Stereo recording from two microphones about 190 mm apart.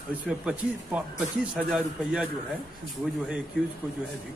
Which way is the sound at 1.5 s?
5° right (ahead or behind).